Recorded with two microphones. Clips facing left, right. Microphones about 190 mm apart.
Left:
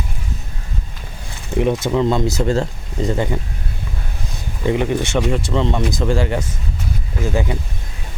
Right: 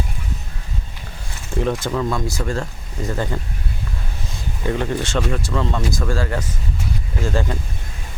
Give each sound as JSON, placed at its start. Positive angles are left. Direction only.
{"t": 1.5, "sound": "speech", "side_deg": 20}
{"t": 4.6, "sound": "speech", "side_deg": 15}